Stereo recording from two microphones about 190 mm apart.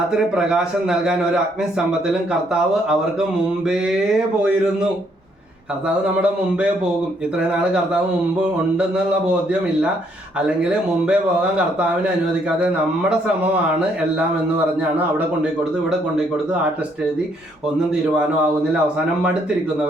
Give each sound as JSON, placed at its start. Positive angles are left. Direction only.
{"t": 0.1, "sound": "speech", "side_deg": -5}
{"t": 9.0, "sound": "speech", "side_deg": -5}